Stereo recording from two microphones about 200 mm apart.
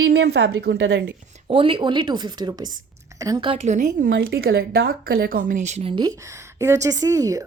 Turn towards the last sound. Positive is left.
turn(degrees=-15)  # may be behind; listen again after turning